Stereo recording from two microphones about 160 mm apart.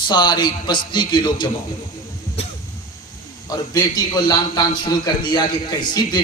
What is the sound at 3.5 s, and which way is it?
A man's voice, 25° left (ahead or behind).